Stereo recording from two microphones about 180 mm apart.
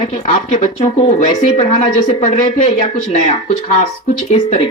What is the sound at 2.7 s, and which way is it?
Speech, 30° left (ahead or behind).